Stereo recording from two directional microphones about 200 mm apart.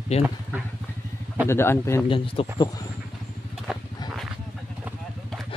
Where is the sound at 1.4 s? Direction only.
10° left (ahead or behind).